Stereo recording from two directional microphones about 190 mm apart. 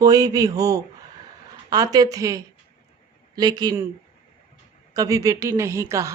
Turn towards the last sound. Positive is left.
turn(degrees=-15)  # may be behind; listen again after turning